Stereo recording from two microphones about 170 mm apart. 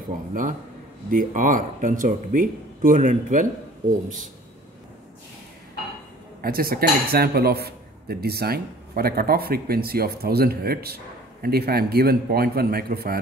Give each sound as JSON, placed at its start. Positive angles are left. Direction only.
{"t": 0.3, "sound": "speech", "side_deg": -55}
{"t": 6.4, "sound": "speech", "side_deg": -60}